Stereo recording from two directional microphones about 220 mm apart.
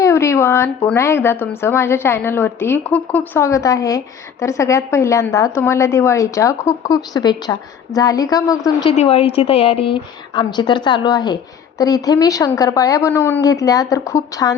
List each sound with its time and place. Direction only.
0.0 s speech: 15° left (ahead or behind)
8.9 s a woman's voice: 25° left (ahead or behind)